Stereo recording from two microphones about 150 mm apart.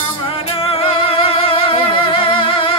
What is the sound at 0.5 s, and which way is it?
Music, 40° left (ahead or behind).